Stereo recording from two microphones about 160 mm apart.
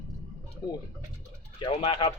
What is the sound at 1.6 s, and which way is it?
Speech, 40° left (ahead or behind).